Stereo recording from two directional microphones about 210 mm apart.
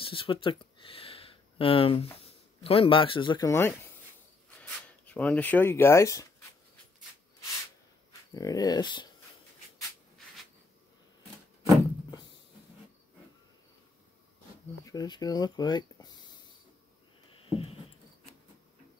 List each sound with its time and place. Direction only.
0.0 s speech: 25° left (ahead or behind)
5.0 s speech: 5° left (ahead or behind)
8.4 s speech: 15° left (ahead or behind)
14.9 s speech: 20° left (ahead or behind)
17.5 s a sound: 25° left (ahead or behind)